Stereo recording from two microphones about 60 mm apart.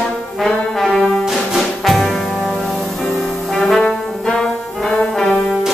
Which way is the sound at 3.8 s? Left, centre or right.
Centre.